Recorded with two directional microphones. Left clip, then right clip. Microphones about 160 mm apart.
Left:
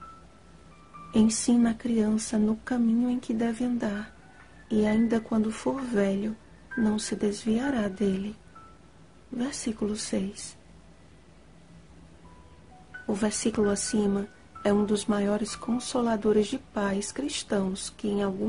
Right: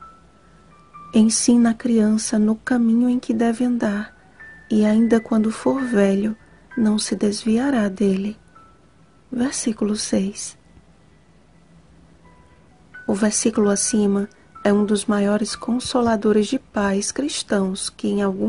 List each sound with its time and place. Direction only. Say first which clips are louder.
1.1 s speech: right 7 dB; 40° right (ahead or behind)
9.4 s speech: right 8 dB; 40° right (ahead or behind)
13.0 s speech: right 8 dB; 40° right (ahead or behind)